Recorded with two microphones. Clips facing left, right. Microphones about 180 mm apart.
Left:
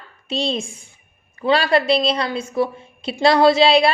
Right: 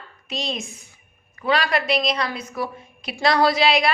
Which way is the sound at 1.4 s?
30° left (ahead or behind).